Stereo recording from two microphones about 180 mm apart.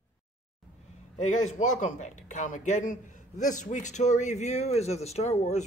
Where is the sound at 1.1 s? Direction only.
40° left (ahead or behind).